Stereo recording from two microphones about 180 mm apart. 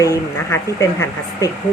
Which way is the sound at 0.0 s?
20° left (ahead or behind).